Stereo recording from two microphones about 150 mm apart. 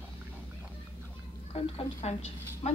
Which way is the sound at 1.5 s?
40° left (ahead or behind).